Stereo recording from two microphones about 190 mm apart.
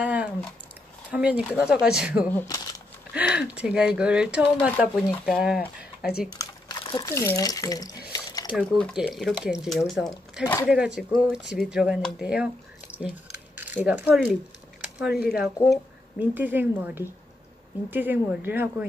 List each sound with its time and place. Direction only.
0.0 s a sound: 5° right (ahead or behind)
1.1 s speech: 5° right (ahead or behind)
2.3 s speech: 15° left (ahead or behind)
3.1 s speech: 5° right (ahead or behind)
6.3 s typing: 25° left (ahead or behind)
7.1 s speech: 15° left (ahead or behind)
8.1 s a sound: 20° left (ahead or behind)
8.5 s speech: centre (ahead or behind)
10.4 s speech: 15° left (ahead or behind)
10.7 s speech: 5° right (ahead or behind)
15.0 s speech: 60° left (ahead or behind)
15.2 s a woman's voice: centre (ahead or behind)